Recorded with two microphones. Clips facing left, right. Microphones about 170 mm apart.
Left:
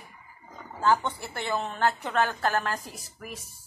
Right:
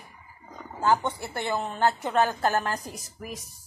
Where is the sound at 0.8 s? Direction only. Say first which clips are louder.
Right 1 dB; 15° right (ahead or behind).